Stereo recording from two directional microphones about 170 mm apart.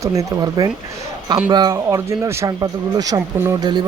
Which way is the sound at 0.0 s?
20° right (ahead or behind).